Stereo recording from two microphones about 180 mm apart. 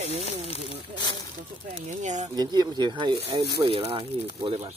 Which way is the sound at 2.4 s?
25° right (ahead or behind).